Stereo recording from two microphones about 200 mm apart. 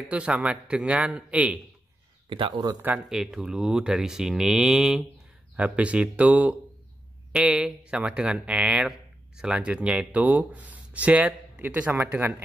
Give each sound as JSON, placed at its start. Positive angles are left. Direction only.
{"t": 0.1, "sound": "speech", "side_deg": -5}
{"t": 2.2, "sound": "speech", "side_deg": -25}
{"t": 2.9, "sound": "speech", "side_deg": -5}